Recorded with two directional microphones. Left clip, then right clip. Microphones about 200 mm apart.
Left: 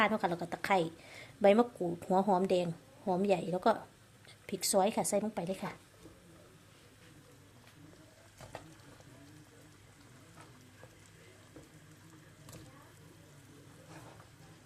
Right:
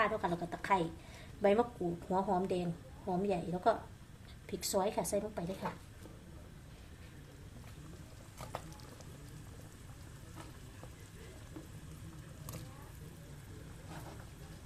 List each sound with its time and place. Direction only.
0.0 s a woman's voice: 45° left (ahead or behind)